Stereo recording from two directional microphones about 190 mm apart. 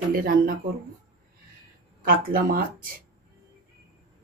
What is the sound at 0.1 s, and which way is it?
Speech, 50° right (ahead or behind).